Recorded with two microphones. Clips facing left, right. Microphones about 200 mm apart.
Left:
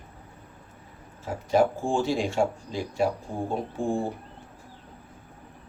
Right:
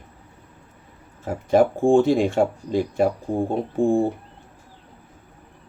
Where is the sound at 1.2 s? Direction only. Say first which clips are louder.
Right 5 dB; 55° right (ahead or behind).